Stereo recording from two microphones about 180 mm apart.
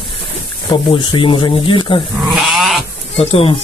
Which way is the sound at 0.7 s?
25° left (ahead or behind).